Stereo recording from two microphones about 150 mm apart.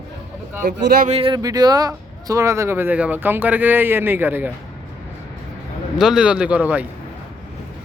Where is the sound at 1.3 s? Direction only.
25° right (ahead or behind).